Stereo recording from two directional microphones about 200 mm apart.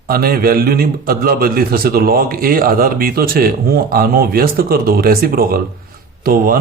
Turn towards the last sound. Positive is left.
turn(degrees=-50)  # may be behind; listen again after turning